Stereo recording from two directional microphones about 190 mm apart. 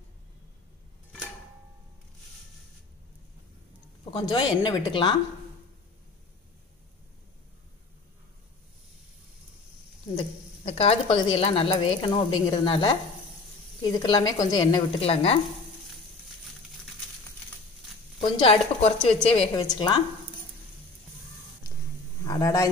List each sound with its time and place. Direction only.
4.0 s speech: 25° left (ahead or behind)
10.1 s a sound: 35° left (ahead or behind)
11.3 s speech: 30° left (ahead or behind)
15.0 s a woman's voice: 30° left (ahead or behind)
18.2 s a woman's voice: 25° left (ahead or behind)
22.2 s a man's voice: 15° left (ahead or behind)